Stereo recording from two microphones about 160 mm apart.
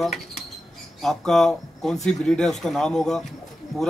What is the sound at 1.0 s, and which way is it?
Speech, 5° left (ahead or behind).